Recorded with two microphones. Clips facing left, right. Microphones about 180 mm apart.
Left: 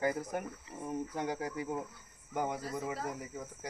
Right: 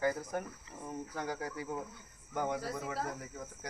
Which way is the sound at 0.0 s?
20° left (ahead or behind).